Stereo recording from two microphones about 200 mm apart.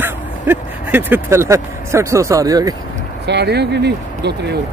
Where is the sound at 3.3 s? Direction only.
55° right (ahead or behind).